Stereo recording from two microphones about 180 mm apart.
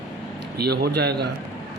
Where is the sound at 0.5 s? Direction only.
65° right (ahead or behind).